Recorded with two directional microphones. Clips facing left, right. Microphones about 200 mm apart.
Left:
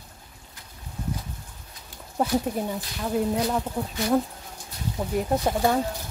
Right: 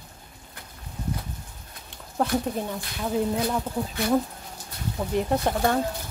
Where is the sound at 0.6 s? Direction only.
60° right (ahead or behind).